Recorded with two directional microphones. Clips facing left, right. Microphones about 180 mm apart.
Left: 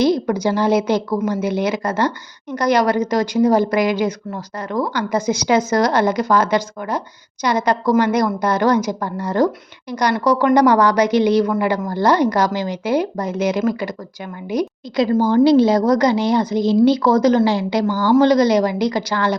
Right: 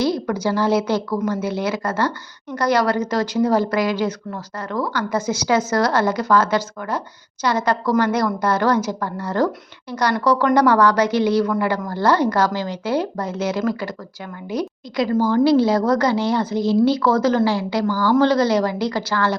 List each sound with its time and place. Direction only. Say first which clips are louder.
0.0 s speech: left 4 dB; 20° left (ahead or behind)